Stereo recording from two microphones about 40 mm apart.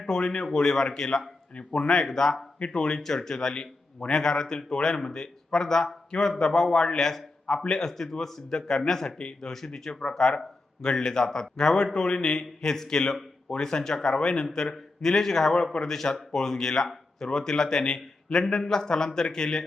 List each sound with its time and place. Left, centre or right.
0.0 s speech: centre
9.1 s speech: left
9.5 s speech: centre